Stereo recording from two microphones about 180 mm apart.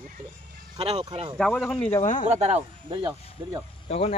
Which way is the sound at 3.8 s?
35° left (ahead or behind).